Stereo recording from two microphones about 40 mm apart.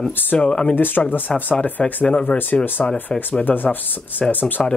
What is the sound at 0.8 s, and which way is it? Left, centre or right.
Speech, left.